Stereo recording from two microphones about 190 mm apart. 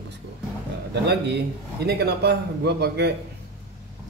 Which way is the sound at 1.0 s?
60° right (ahead or behind).